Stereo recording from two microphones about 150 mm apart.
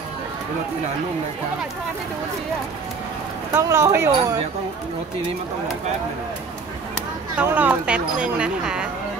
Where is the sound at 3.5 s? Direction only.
20° right (ahead or behind).